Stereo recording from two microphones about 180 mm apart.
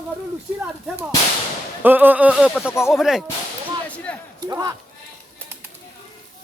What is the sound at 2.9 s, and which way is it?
Speech, centre (ahead or behind).